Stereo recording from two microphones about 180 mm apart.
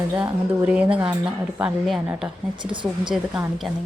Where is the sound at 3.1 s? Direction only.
Centre (ahead or behind).